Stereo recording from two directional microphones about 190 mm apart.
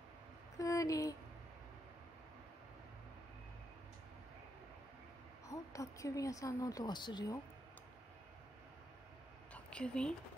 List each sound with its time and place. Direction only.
0.6 s speech: 15° left (ahead or behind)
5.5 s speech: 15° left (ahead or behind)
9.5 s a sound: 5° left (ahead or behind)